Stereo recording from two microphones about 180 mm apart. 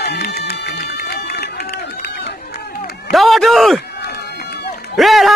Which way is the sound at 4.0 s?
65° left (ahead or behind).